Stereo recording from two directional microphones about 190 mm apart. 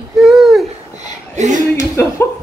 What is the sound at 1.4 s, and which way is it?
Music, 40° right (ahead or behind).